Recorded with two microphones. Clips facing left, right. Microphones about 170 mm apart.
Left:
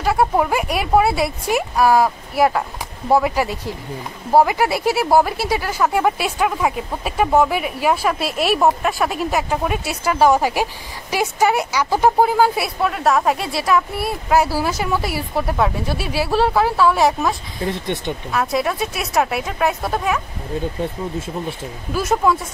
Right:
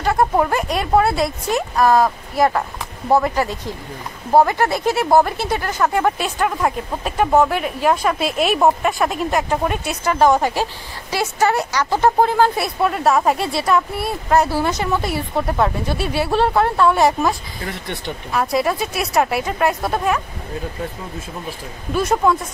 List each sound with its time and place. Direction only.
0.0 s speech: 5° left (ahead or behind)
17.6 s speech: 20° left (ahead or behind)
18.3 s speech: centre (ahead or behind)
21.9 s speech: centre (ahead or behind)